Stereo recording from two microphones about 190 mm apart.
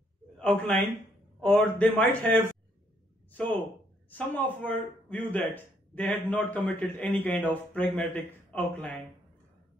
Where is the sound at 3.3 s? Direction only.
10° left (ahead or behind).